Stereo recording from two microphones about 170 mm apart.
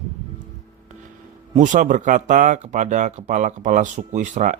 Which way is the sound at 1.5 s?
50° right (ahead or behind).